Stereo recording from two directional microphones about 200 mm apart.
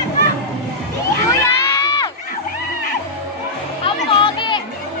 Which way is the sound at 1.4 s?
20° left (ahead or behind).